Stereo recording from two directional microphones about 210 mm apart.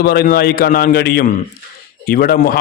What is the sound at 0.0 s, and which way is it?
A man's voice, 45° left (ahead or behind).